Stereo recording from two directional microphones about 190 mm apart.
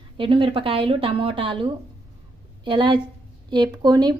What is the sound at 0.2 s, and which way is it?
A woman's voice, 25° right (ahead or behind).